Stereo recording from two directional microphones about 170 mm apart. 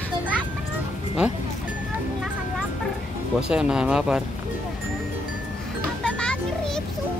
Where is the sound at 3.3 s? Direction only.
5° right (ahead or behind).